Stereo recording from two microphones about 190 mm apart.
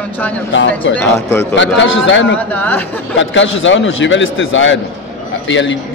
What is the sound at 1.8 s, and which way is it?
Speech, 80° left.